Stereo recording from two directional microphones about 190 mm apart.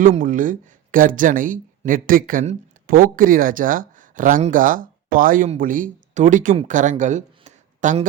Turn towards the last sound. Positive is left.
turn(degrees=-40)  # may be behind; listen again after turning